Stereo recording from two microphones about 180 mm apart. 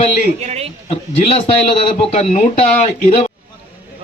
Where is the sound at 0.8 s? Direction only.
35° left (ahead or behind).